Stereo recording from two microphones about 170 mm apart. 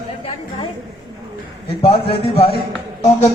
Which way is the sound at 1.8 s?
35° left (ahead or behind).